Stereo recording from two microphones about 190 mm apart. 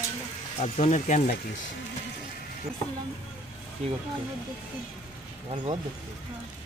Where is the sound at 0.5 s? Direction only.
35° left (ahead or behind).